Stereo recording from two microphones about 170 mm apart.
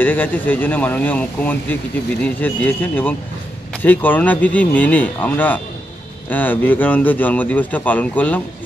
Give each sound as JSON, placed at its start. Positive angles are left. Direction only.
{"t": 0.0, "sound": "speech", "side_deg": 10}